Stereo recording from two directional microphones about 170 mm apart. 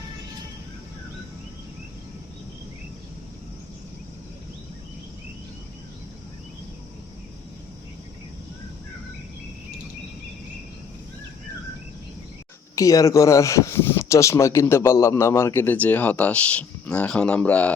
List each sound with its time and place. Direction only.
12.7 s speech: 20° left (ahead or behind)